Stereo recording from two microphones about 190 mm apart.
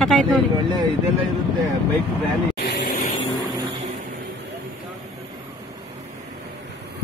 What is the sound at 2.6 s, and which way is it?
Vehicle, 50° left (ahead or behind).